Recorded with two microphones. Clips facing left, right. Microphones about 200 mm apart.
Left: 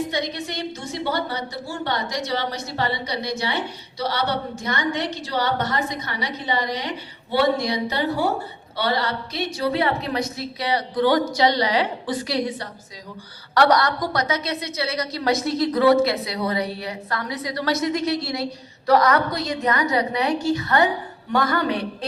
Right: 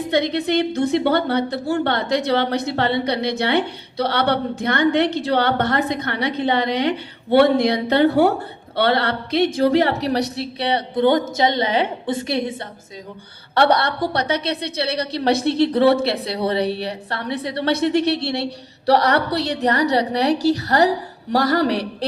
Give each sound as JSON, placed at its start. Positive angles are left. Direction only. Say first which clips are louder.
{"t": 0.1, "sound": "a woman's voice", "louder": "right 9 dB", "side_deg": -60}
{"t": 10.2, "sound": "a woman's voice", "louder": "right 4 dB", "side_deg": -70}
{"t": 10.6, "sound": "a woman's voice", "louder": "right 3 dB", "side_deg": -30}
{"t": 17.9, "sound": "a woman's voice", "louder": "right 5 dB", "side_deg": -65}
{"t": 18.9, "sound": "a woman's voice", "louder": "right 1 dB", "side_deg": -35}
{"t": 19.3, "sound": "a woman's voice", "louder": "right 4 dB", "side_deg": -70}
{"t": 19.6, "sound": "a woman's voice", "louder": "right 3 dB", "side_deg": -35}